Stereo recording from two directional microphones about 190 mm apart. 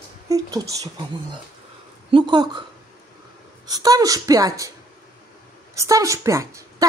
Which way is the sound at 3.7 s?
20° right (ahead or behind).